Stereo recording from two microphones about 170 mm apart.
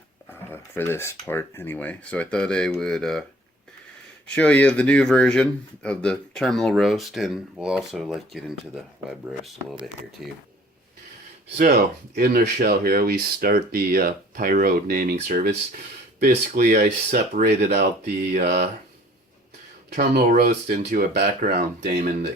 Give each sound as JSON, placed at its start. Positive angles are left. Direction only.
{"t": 0.5, "sound": "speech", "side_deg": 15}
{"t": 4.4, "sound": "speech", "side_deg": 5}
{"t": 11.5, "sound": "speech", "side_deg": -55}
{"t": 17.4, "sound": "speech", "side_deg": -75}
{"t": 20.4, "sound": "speech", "side_deg": -65}